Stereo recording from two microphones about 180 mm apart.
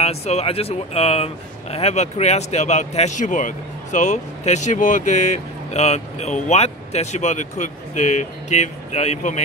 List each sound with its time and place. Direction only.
0.0 s speech: 35° left (ahead or behind)